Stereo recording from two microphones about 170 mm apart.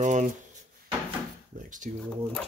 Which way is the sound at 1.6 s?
50° right (ahead or behind).